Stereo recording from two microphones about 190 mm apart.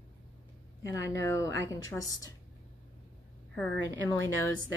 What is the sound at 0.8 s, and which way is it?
A woman's voice, 15° left (ahead or behind).